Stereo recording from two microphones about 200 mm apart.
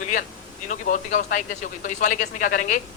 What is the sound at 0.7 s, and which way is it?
A man's voice, 40° left (ahead or behind).